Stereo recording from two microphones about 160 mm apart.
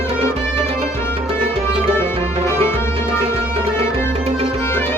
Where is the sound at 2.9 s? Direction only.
40° right (ahead or behind).